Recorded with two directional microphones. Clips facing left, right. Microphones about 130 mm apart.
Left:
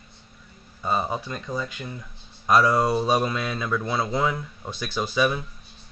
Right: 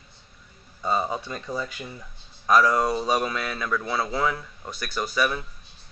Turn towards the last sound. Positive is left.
turn(degrees=20)  # may be behind; listen again after turning